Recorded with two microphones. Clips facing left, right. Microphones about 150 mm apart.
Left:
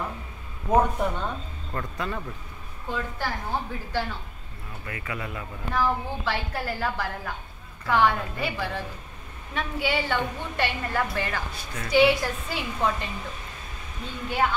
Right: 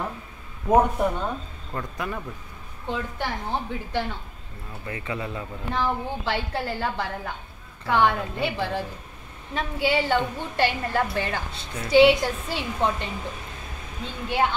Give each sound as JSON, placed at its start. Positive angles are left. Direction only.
{"t": 0.7, "sound": "a woman's voice", "side_deg": -10}